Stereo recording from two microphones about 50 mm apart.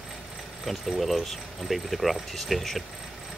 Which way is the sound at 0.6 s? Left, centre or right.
Centre.